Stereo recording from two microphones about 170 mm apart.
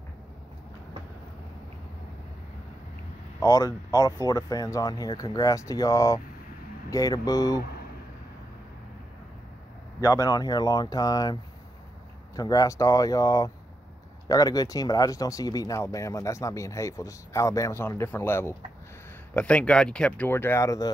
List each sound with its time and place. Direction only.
3.3 s speech: 20° left (ahead or behind)
10.0 s speech: 20° left (ahead or behind)
12.4 s speech: 20° left (ahead or behind)